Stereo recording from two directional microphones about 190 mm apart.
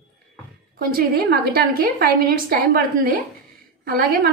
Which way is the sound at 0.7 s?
55° right (ahead or behind).